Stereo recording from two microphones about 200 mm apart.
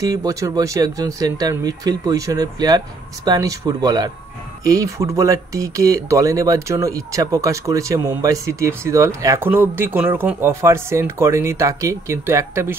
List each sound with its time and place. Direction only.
0.0 s speech: 20° right (ahead or behind)